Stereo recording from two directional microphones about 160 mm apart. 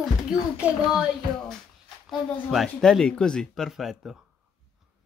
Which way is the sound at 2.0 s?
Centre (ahead or behind).